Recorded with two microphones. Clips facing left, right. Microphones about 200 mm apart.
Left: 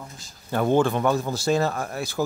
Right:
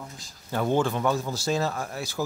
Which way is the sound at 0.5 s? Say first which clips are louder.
Left 4 dB; 55° left (ahead or behind).